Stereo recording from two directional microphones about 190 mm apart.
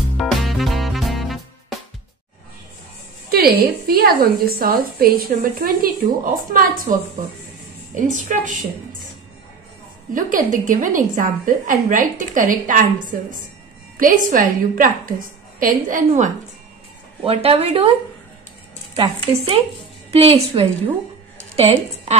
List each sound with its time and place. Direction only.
0.2 s music: centre (ahead or behind)
3.3 s a woman's voice: 50° right (ahead or behind)
10.1 s a woman's voice: 45° right (ahead or behind)
13.9 s a woman's voice: 45° right (ahead or behind)
17.2 s a woman's voice: 30° right (ahead or behind)
18.9 s a woman's voice: 30° right (ahead or behind)